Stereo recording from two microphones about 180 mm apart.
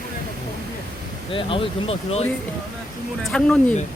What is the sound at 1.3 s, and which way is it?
Speech, 30° left (ahead or behind).